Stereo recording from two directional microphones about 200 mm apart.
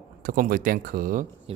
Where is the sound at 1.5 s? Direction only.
30° right (ahead or behind).